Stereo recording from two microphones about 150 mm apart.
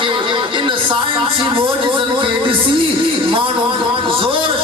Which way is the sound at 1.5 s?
35° right (ahead or behind).